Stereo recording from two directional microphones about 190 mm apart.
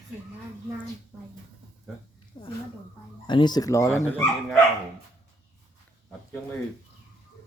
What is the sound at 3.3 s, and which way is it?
Speech, 25° left (ahead or behind).